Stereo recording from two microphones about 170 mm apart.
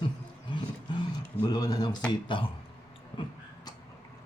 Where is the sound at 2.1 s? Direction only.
30° left (ahead or behind).